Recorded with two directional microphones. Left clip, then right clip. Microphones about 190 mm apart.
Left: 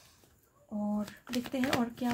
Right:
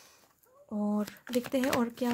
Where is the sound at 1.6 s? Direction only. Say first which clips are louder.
Right 2 dB; 40° right (ahead or behind).